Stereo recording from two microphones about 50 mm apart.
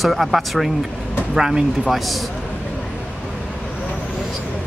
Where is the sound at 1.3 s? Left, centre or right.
Centre.